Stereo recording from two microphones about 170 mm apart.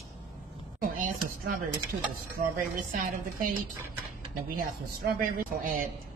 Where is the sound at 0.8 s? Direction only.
55° right (ahead or behind).